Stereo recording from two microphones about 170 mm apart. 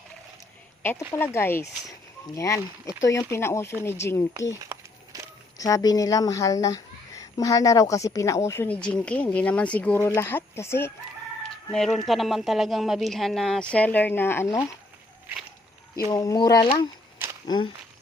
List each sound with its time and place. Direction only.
0.8 s speech: 10° left (ahead or behind)
4.6 s a sound: 20° right (ahead or behind)
5.5 s speech: 20° left (ahead or behind)
11.4 s speech: centre (ahead or behind); by 14.8 s 20° left (ahead or behind)
16.0 s speech: 20° left (ahead or behind)